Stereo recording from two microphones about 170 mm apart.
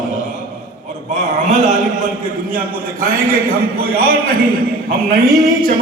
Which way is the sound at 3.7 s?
65° right (ahead or behind).